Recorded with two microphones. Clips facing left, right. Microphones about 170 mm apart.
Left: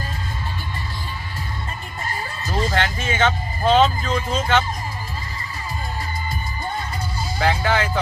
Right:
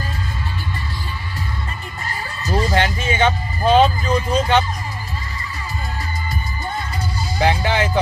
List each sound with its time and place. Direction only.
2.7 s music: 15° right (ahead or behind)
7.3 s music: 20° right (ahead or behind)